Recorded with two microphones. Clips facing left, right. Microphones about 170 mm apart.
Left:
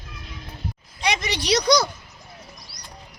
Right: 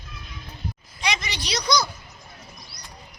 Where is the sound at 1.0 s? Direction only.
60° left (ahead or behind).